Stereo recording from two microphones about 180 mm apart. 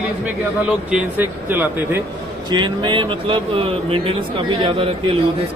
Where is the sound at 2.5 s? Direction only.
25° right (ahead or behind).